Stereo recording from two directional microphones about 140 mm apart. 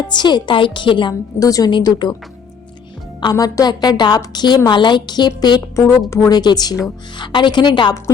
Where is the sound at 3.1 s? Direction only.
30° left (ahead or behind).